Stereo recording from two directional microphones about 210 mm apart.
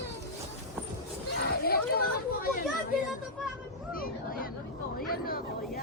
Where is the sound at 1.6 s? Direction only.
45° left (ahead or behind).